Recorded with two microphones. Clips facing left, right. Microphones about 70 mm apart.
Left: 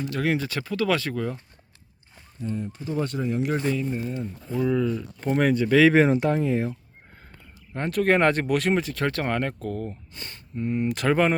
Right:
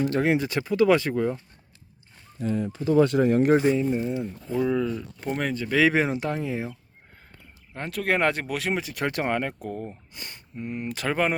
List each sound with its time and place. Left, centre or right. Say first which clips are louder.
0.2 s speech: right 2 dB; centre
2.4 s speech: right 4 dB; right
3.2 s speech: right 6 dB; right
3.6 s speech: right 4 dB; right; by 5.7 s centre
5.7 s speech: left 4 dB; centre
7.7 s speech: left 5 dB; centre